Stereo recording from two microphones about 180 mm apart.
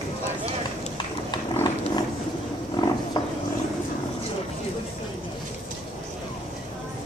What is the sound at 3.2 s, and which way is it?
Vehicle, 20° left (ahead or behind).